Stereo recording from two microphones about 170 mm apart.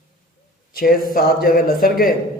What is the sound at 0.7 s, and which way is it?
A man's voice, 60° left (ahead or behind).